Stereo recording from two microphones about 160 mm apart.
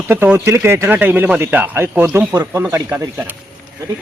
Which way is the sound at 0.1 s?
15° right (ahead or behind).